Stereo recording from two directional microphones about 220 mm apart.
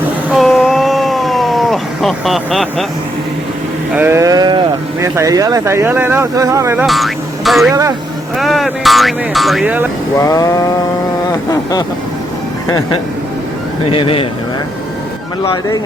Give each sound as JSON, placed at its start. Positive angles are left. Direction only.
{"t": 0.3, "sound": "a sound", "side_deg": 0}
{"t": 3.9, "sound": "speech", "side_deg": -10}
{"t": 6.8, "sound": "speech", "side_deg": 0}
{"t": 7.7, "sound": "speech", "side_deg": -15}
{"t": 8.4, "sound": "speech", "side_deg": 0}
{"t": 10.2, "sound": "a sound", "side_deg": 15}
{"t": 13.9, "sound": "speech", "side_deg": 25}